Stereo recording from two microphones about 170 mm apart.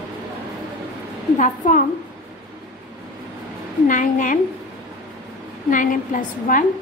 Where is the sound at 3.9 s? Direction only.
50° left (ahead or behind).